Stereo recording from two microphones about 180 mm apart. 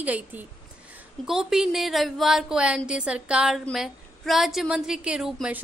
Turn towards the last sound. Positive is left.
turn(degrees=-5)  # may be behind; listen again after turning